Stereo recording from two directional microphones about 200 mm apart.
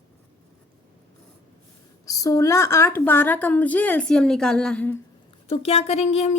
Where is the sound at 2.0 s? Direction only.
15° left (ahead or behind).